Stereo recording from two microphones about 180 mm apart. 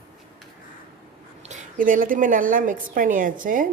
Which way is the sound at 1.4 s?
45° right (ahead or behind).